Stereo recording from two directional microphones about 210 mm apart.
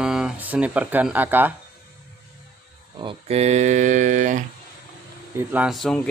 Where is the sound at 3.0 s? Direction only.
30° right (ahead or behind).